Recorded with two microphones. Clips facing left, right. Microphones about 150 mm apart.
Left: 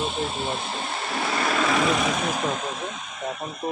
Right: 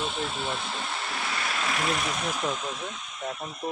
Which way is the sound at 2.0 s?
90° left.